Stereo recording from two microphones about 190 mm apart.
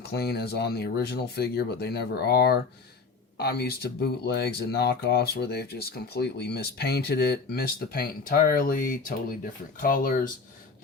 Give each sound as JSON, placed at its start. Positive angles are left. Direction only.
{"t": 0.1, "sound": "speech", "side_deg": 60}